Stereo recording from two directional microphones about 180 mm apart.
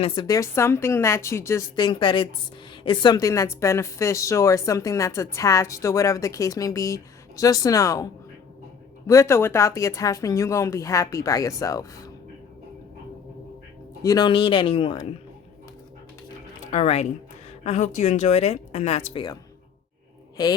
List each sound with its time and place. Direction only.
0.0 s a woman's voice: 25° left (ahead or behind)
14.0 s speech: 20° left (ahead or behind)
16.7 s a man's voice: 35° left (ahead or behind)